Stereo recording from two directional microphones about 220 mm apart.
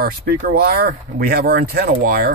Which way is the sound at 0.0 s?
40° right (ahead or behind).